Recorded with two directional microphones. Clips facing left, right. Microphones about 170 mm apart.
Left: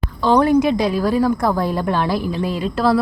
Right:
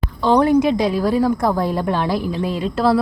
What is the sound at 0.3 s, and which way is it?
Speech, 20° right (ahead or behind).